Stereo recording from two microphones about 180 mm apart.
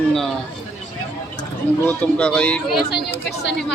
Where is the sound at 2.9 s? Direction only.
70° left (ahead or behind).